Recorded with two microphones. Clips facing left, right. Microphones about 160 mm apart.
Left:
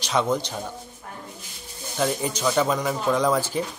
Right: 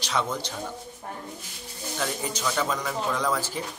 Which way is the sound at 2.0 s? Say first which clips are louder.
Left 6 dB; 20° left (ahead or behind).